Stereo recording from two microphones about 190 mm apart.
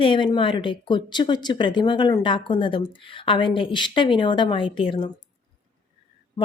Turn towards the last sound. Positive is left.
turn(degrees=25)  # may be behind; listen again after turning